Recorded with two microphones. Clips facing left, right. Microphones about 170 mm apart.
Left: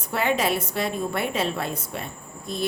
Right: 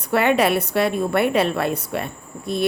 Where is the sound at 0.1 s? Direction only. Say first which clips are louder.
Right 6 dB; 65° right (ahead or behind).